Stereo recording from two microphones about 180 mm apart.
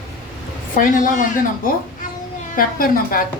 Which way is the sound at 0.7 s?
45° left (ahead or behind).